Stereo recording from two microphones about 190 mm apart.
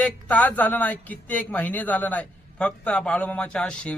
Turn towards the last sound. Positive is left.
turn(degrees=5)  # may be behind; listen again after turning